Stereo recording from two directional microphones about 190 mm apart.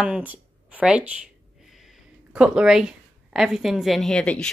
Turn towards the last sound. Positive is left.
turn(degrees=5)  # may be behind; listen again after turning